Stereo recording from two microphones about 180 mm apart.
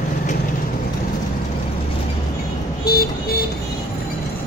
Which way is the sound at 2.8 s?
55° left (ahead or behind).